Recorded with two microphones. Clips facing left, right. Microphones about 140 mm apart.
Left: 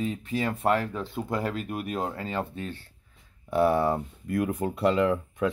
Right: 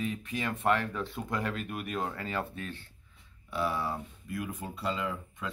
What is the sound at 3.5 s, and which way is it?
Speech, 55° left (ahead or behind).